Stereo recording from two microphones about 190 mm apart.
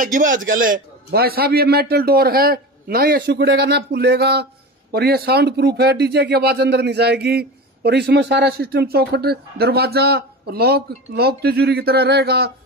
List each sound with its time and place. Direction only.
0.0 s a man's voice: 45° right (ahead or behind)